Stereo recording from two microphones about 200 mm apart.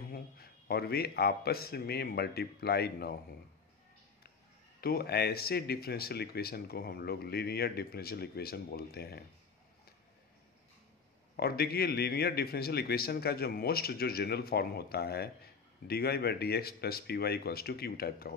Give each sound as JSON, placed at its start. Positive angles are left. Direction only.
{"t": 0.1, "sound": "a man's voice", "side_deg": 50}
{"t": 4.7, "sound": "a man's voice", "side_deg": 50}
{"t": 11.3, "sound": "a man's voice", "side_deg": 50}